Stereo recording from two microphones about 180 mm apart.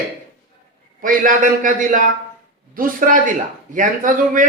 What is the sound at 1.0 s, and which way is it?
Speech, 50° right (ahead or behind).